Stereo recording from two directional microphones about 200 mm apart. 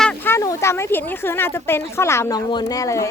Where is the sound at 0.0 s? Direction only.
10° left (ahead or behind).